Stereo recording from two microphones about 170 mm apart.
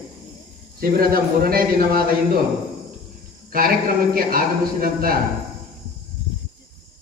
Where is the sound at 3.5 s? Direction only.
60° right (ahead or behind).